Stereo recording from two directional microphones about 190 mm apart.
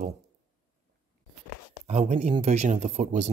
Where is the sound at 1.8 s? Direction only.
35° right (ahead or behind).